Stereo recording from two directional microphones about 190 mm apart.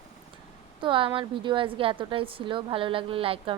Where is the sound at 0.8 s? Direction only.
25° right (ahead or behind).